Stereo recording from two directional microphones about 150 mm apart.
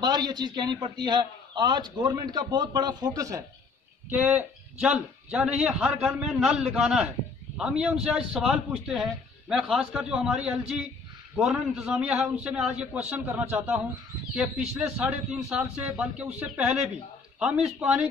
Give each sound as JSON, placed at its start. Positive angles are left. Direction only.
{"t": 0.0, "sound": "a man's voice", "side_deg": -30}